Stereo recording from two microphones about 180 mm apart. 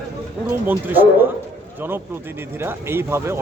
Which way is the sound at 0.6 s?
10° right (ahead or behind).